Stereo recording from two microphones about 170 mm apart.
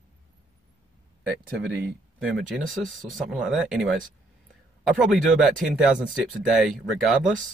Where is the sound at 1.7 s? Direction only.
10° right (ahead or behind).